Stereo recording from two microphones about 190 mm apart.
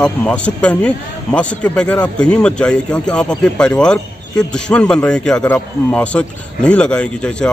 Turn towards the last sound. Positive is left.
turn(degrees=5)  # may be behind; listen again after turning